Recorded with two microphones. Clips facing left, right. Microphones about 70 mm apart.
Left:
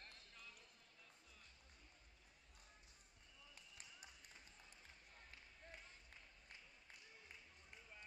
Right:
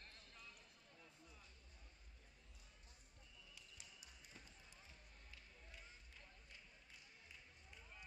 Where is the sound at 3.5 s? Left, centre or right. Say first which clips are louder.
Left 3 dB; left.